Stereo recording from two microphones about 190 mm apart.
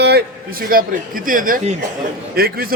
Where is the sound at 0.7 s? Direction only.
45° right (ahead or behind).